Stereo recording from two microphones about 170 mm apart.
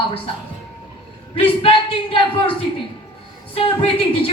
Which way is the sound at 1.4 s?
35° left (ahead or behind).